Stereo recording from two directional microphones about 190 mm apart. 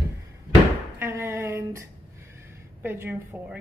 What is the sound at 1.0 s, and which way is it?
Speech, 15° right (ahead or behind).